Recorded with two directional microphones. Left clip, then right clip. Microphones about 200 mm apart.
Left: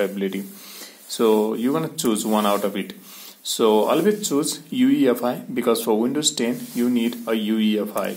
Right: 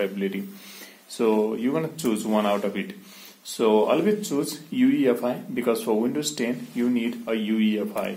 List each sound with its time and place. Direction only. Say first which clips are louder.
0.0 s speech: left 3 dB; 25° left (ahead or behind)